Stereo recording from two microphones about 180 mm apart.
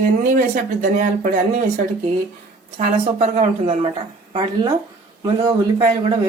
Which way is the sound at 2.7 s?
40° right (ahead or behind).